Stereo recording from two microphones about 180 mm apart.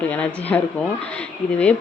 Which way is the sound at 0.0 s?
10° left (ahead or behind).